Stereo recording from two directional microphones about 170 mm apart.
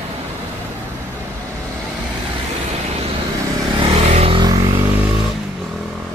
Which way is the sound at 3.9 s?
40° right (ahead or behind).